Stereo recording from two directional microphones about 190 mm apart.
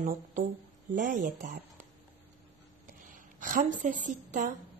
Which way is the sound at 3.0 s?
45° right (ahead or behind).